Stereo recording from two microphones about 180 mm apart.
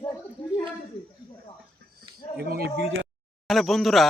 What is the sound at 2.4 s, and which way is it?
Speech, 60° right (ahead or behind).